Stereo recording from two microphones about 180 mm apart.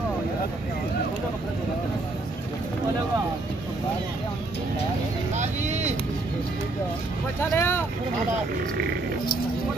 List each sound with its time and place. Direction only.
5.3 s vehicle: 40° right (ahead or behind)
7.3 s vehicle: 15° left (ahead or behind)